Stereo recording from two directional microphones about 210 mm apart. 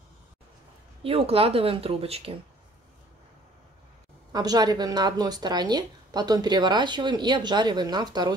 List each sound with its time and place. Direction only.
1.0 s a woman's voice: 25° right (ahead or behind)
4.3 s a woman's voice: 20° right (ahead or behind)